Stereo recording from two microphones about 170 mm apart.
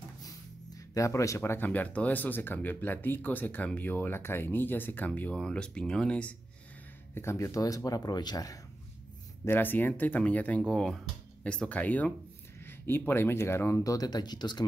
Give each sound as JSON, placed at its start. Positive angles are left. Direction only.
{"t": 0.9, "sound": "speech", "side_deg": 20}
{"t": 7.2, "sound": "speech", "side_deg": 15}
{"t": 9.4, "sound": "speech", "side_deg": 10}